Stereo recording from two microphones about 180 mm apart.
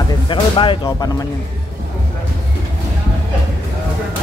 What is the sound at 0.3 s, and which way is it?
Speech, 25° left (ahead or behind).